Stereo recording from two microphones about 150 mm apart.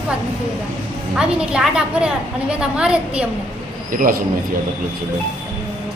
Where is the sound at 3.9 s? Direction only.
65° right (ahead or behind).